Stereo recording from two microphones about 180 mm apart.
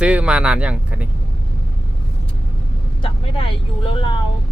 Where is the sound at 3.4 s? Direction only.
30° left (ahead or behind).